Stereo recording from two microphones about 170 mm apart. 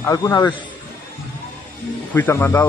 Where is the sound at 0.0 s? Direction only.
15° left (ahead or behind).